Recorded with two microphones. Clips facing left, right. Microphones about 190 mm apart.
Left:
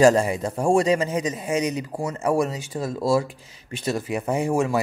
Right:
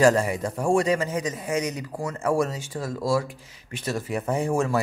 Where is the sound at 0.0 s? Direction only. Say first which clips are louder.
Left 3 dB; 25° left (ahead or behind).